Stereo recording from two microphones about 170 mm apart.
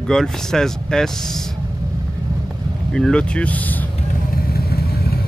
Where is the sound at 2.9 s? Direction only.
5° left (ahead or behind).